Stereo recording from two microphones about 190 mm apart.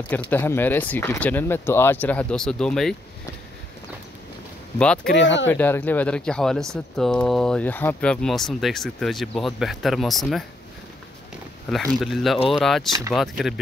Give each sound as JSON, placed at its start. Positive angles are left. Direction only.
{"t": 0.1, "sound": "speech", "side_deg": 10}
{"t": 4.7, "sound": "speech", "side_deg": 5}
{"t": 5.1, "sound": "speech", "side_deg": 70}
{"t": 5.5, "sound": "speech", "side_deg": 10}
{"t": 11.7, "sound": "speech", "side_deg": 0}